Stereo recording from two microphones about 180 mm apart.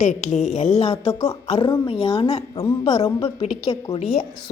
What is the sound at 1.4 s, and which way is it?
Speech, 30° left (ahead or behind).